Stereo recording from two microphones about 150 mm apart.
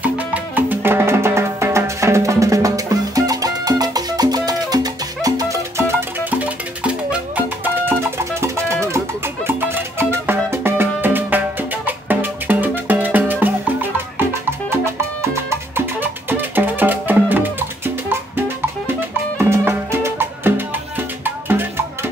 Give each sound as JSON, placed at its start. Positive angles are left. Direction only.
{"t": 0.0, "sound": "music", "side_deg": -10}
{"t": 15.3, "sound": "music", "side_deg": -15}